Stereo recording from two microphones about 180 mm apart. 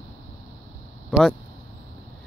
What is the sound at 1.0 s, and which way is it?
Speech, centre (ahead or behind).